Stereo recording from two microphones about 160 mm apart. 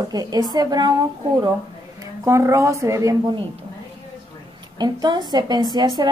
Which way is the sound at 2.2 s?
20° right (ahead or behind).